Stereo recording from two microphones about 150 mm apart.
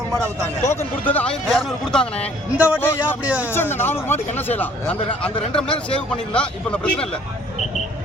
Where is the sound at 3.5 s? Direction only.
15° left (ahead or behind).